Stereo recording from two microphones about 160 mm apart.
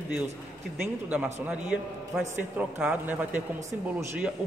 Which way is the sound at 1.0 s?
10° right (ahead or behind).